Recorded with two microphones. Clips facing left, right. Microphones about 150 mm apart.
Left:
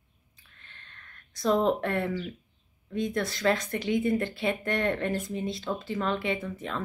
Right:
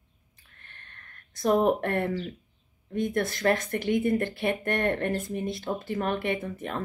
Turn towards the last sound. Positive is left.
turn(degrees=-50)  # may be behind; listen again after turning